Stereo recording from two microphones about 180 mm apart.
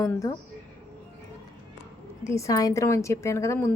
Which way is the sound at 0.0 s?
15° left (ahead or behind).